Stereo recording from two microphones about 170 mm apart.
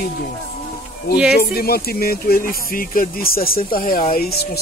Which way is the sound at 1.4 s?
65° left (ahead or behind).